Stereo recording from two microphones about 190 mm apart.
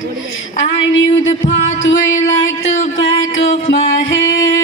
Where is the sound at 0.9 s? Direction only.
85° left.